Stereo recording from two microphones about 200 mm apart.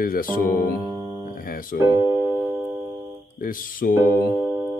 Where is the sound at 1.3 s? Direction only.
45° left (ahead or behind).